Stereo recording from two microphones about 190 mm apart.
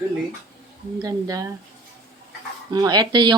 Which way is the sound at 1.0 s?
20° right (ahead or behind).